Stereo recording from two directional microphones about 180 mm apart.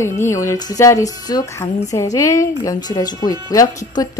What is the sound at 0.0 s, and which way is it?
Speech, 15° left (ahead or behind).